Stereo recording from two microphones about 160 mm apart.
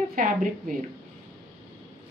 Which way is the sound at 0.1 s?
60° right (ahead or behind).